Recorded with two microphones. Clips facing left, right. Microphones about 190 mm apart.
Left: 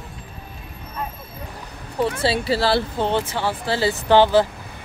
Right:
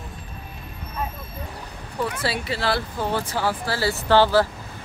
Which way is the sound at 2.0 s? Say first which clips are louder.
Left 5 dB; 30° left (ahead or behind).